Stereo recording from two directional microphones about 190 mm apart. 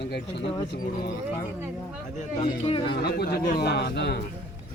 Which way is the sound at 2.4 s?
30° left (ahead or behind).